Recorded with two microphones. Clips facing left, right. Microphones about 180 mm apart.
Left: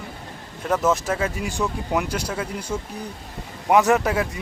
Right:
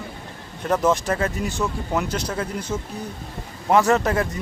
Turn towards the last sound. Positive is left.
turn(degrees=5)  # may be behind; listen again after turning